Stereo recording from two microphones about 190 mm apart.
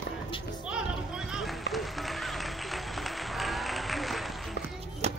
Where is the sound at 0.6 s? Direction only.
5° right (ahead or behind).